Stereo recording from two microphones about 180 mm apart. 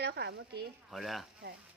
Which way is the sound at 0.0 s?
65° right (ahead or behind).